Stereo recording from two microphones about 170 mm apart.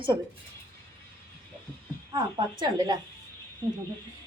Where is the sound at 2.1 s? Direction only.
25° right (ahead or behind).